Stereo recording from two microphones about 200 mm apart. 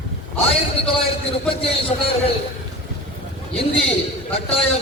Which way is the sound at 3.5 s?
30° left (ahead or behind).